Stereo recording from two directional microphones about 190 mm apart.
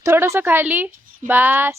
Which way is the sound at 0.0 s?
15° right (ahead or behind).